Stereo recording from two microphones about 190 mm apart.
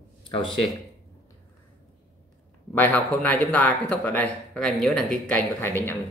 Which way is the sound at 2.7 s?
10° left (ahead or behind).